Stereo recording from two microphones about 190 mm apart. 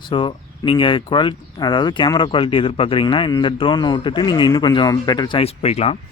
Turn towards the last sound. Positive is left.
turn(degrees=35)  # may be behind; listen again after turning